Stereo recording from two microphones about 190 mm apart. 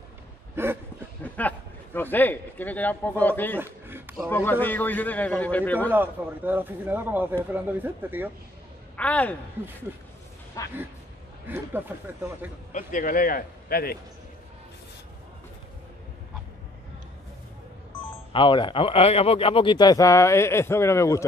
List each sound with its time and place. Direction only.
0.6 s speech: 15° right (ahead or behind)
1.2 s a sound: 10° left (ahead or behind)
2.0 s speech: 10° left (ahead or behind)
3.5 s a sound: 10° right (ahead or behind)
4.3 s speech: 10° left (ahead or behind)
5.9 s speech: 10° right (ahead or behind)
8.9 s speech: 5° left (ahead or behind)
10.6 s a sound: 15° left (ahead or behind)
11.4 s speech: 10° right (ahead or behind)
12.7 s a man's voice: 45° left (ahead or behind)
18.3 s speech: 25° left (ahead or behind)